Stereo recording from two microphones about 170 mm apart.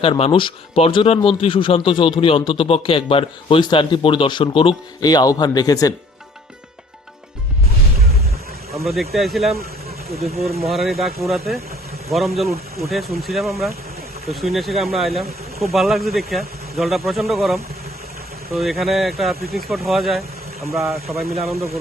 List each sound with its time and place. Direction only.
0.0 s speech: 30° left (ahead or behind)
9.0 s speech: centre (ahead or behind)
10.2 s speech: 35° right (ahead or behind)
10.6 s speech: centre (ahead or behind)